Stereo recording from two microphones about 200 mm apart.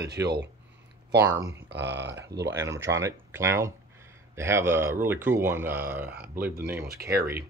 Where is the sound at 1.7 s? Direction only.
60° right (ahead or behind).